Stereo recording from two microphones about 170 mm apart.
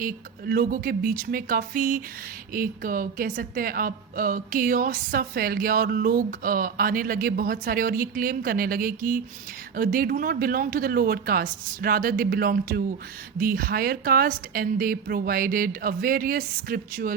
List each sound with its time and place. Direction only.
0.0 s a woman's voice: 55° right (ahead or behind)